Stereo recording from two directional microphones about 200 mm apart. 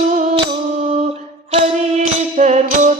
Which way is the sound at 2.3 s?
35° right (ahead or behind).